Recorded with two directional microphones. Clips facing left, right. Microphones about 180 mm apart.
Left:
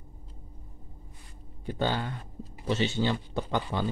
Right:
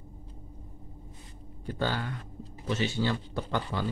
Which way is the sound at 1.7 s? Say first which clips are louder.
Left 2 dB; 20° left (ahead or behind).